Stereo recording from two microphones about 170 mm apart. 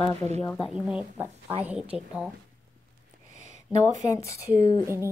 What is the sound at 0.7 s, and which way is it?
A woman's voice, 5° right (ahead or behind).